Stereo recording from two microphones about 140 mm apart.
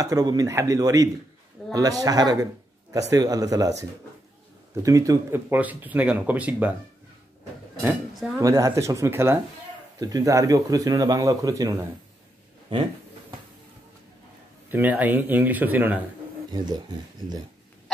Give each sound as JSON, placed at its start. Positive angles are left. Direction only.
{"t": 0.0, "sound": "speech", "side_deg": -25}
{"t": 4.8, "sound": "speech", "side_deg": -25}
{"t": 8.4, "sound": "speech", "side_deg": -25}
{"t": 14.7, "sound": "speech", "side_deg": -10}
{"t": 16.4, "sound": "speech", "side_deg": -30}